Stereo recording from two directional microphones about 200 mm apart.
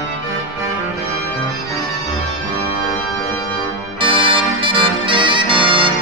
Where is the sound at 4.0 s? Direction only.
25° right (ahead or behind).